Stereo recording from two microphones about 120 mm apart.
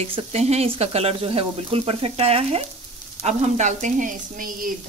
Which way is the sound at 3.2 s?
75° right (ahead or behind).